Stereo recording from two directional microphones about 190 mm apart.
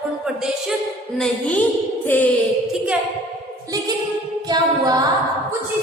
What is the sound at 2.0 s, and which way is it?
Music, 10° left (ahead or behind).